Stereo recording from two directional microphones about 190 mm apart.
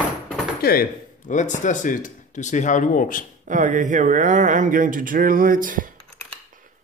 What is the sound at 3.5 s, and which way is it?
Speech, 40° right (ahead or behind).